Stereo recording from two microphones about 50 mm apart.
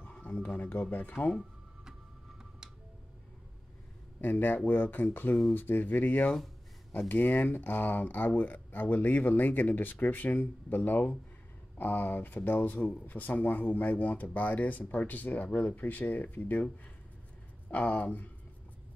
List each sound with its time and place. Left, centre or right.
0.0 s a sound: left
0.6 s speech: left
1.4 s music: centre
4.2 s speech: left
17.6 s speech: left